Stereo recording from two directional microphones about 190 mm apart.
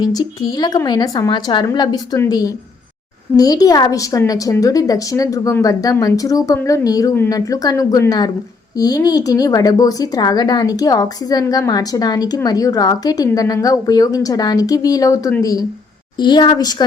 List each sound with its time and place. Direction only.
0.0 s speech: 20° left (ahead or behind)